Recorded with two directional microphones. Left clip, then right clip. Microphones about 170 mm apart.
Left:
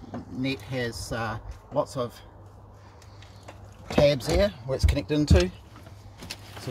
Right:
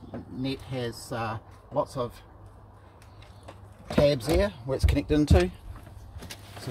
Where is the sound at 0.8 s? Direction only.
10° left (ahead or behind).